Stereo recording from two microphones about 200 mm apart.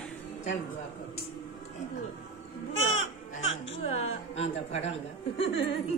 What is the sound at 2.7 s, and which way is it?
Speech, 80° left.